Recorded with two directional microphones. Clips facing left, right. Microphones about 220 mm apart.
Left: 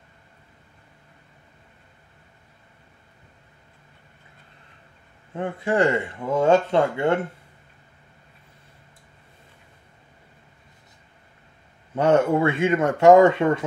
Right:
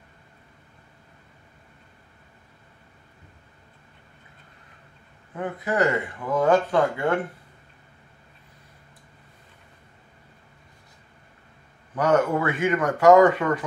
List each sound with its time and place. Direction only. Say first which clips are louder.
5.3 s speech: left 3 dB; 25° left (ahead or behind)
11.9 s speech: left 3 dB; 25° left (ahead or behind)